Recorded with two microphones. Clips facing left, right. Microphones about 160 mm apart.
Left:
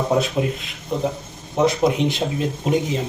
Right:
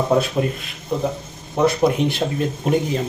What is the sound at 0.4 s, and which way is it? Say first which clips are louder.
Speech: right 1 dB; 15° left (ahead or behind).